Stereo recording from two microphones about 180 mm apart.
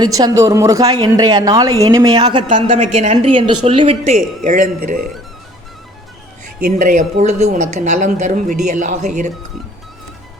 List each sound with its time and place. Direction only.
0.0 s a woman's voice: 20° right (ahead or behind)
4.4 s speech: 45° right (ahead or behind)
6.7 s speech: 45° right (ahead or behind)